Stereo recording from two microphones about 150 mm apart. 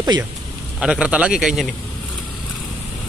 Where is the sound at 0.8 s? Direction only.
5° right (ahead or behind).